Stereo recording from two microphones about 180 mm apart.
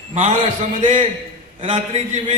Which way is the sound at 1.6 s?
30° right (ahead or behind).